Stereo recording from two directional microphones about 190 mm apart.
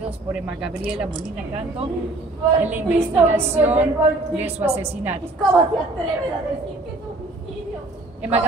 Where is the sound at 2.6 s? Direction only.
10° right (ahead or behind).